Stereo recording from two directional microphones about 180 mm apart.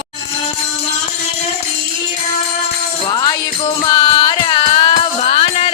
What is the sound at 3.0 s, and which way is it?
Music, 25° left (ahead or behind).